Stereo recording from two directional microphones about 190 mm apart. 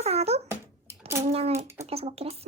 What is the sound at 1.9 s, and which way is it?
Speech, 30° right (ahead or behind).